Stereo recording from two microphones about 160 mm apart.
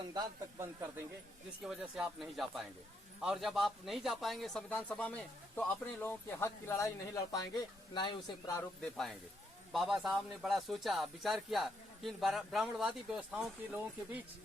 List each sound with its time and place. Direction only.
0.1 s speech: 25° right (ahead or behind)
1.6 s a man's voice: centre (ahead or behind); by 8.6 s 25° left (ahead or behind)
8.8 s speech: centre (ahead or behind)